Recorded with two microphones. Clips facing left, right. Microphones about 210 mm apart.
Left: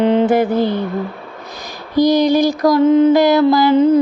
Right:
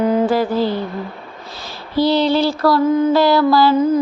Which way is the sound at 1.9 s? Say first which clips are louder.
Left 3 dB; 15° left (ahead or behind).